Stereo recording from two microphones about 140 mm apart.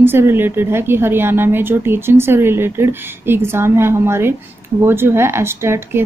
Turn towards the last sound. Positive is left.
turn(degrees=-15)  # may be behind; listen again after turning